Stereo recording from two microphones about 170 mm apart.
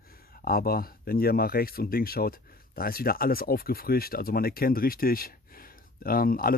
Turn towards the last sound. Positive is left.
turn(degrees=60)  # may be behind; listen again after turning